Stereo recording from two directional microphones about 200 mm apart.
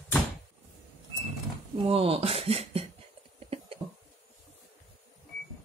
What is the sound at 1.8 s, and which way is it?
Speech, 25° right (ahead or behind).